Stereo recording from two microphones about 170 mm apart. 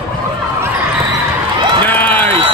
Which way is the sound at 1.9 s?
10° left (ahead or behind).